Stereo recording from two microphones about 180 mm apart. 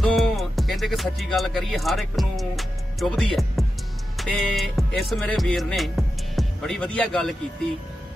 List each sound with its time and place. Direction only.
0.0 s speech: centre (ahead or behind)
4.2 s music: centre (ahead or behind)